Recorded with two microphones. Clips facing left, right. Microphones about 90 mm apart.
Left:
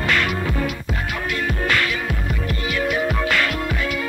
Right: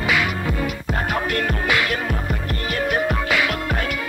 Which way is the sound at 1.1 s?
50° right (ahead or behind).